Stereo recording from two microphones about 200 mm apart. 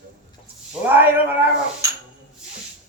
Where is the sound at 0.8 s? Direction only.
10° right (ahead or behind).